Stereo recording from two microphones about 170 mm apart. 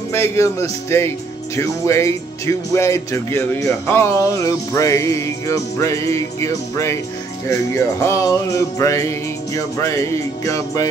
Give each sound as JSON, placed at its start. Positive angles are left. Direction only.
{"t": 0.1, "sound": "speech", "side_deg": 15}
{"t": 7.4, "sound": "music", "side_deg": 15}